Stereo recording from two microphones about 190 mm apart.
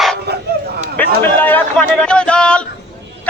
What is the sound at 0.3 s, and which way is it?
Dog, 60° right (ahead or behind).